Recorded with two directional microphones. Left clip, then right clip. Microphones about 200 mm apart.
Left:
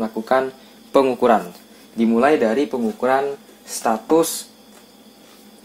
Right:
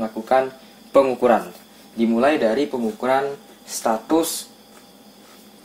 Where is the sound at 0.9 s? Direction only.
40° left (ahead or behind).